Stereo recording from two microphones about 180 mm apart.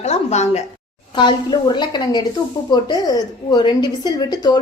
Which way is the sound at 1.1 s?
25° left (ahead or behind).